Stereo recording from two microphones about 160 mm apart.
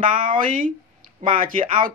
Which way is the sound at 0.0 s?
60° right (ahead or behind).